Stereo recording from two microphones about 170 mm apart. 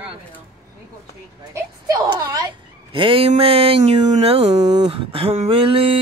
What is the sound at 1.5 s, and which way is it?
Speech, 20° right (ahead or behind).